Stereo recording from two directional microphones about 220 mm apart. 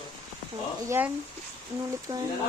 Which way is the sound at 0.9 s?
10° right (ahead or behind).